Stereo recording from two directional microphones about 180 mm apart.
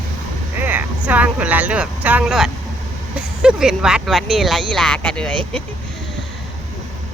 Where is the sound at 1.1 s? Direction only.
10° right (ahead or behind).